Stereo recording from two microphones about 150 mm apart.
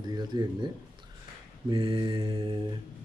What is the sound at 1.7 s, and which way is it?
Speech, 35° right (ahead or behind).